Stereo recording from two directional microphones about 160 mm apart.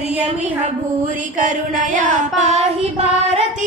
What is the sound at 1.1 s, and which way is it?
Child singing, 55° right (ahead or behind).